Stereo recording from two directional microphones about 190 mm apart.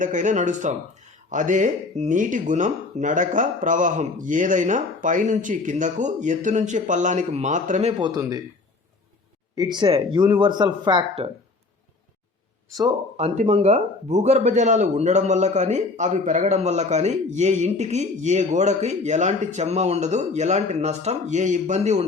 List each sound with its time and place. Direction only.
0.0 s a man's voice: 40° right (ahead or behind); by 8.4 s 20° right (ahead or behind)
9.6 s speech: 20° right (ahead or behind)
13.1 s a man's voice: 35° right (ahead or behind)